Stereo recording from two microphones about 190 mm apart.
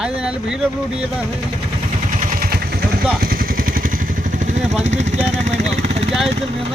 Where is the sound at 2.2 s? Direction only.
50° right (ahead or behind).